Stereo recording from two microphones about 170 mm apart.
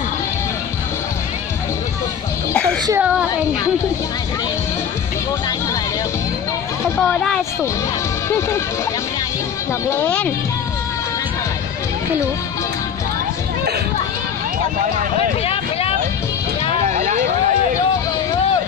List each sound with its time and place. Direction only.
2.9 s a sound: 10° right (ahead or behind)
7.0 s speech: 5° left (ahead or behind)
8.3 s speech: 15° left (ahead or behind)
9.8 s speech: 10° left (ahead or behind)
16.8 s vehicle: 45° right (ahead or behind)